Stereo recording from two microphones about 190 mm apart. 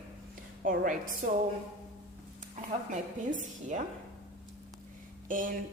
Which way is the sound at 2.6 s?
40° right (ahead or behind).